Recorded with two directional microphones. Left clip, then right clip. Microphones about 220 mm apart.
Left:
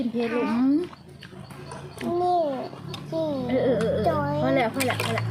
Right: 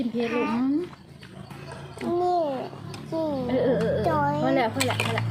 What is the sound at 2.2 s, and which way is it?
A child's voice, 5° right (ahead or behind).